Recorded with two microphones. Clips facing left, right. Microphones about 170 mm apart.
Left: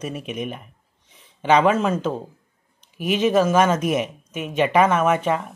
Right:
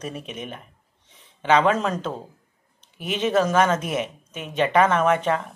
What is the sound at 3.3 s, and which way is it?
Speech, 10° left (ahead or behind).